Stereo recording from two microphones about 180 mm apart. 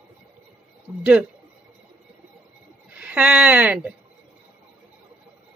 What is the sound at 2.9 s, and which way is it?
Speech, 5° right (ahead or behind).